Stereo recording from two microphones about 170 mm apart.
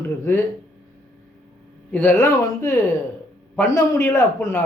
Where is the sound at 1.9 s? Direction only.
10° left (ahead or behind).